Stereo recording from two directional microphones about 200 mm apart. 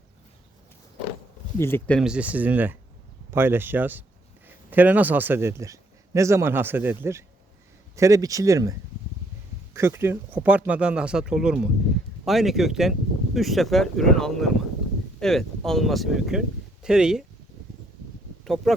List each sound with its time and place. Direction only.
1.5 s speech: 10° left (ahead or behind)
2.0 s a man's voice: 5° right (ahead or behind)
9.7 s speech: 15° right (ahead or behind)
18.4 s speech: centre (ahead or behind)